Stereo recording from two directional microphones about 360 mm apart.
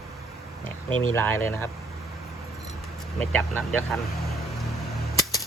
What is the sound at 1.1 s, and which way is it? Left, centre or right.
Speech, centre.